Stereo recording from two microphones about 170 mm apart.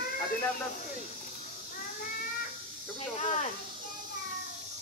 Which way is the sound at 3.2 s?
40° left (ahead or behind).